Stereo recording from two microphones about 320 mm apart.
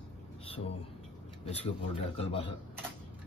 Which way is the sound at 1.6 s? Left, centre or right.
Centre.